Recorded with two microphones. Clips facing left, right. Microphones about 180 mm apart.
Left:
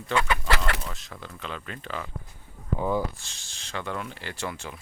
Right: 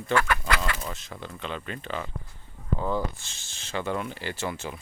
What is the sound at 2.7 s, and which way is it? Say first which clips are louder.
Speech: left 2 dB; 15° left (ahead or behind).